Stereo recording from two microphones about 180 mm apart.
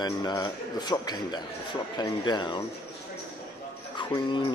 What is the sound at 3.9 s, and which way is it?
Speech, 25° left (ahead or behind).